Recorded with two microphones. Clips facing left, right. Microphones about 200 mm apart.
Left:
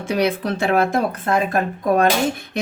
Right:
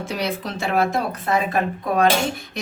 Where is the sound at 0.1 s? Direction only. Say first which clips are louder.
Left 9 dB; 55° left (ahead or behind).